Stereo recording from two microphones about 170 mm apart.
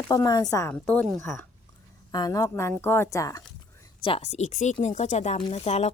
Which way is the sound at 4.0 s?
35° left (ahead or behind).